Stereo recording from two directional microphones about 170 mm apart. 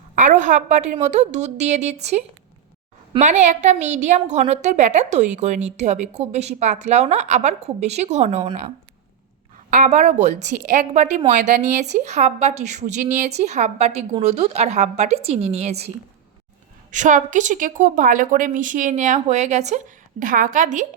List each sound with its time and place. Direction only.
0.2 s a woman's voice: 45° right (ahead or behind)
9.6 s a woman's voice: 50° right (ahead or behind)
16.9 s a woman's voice: 45° right (ahead or behind)